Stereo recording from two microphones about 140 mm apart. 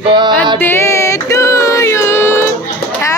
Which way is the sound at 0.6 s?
20° left (ahead or behind).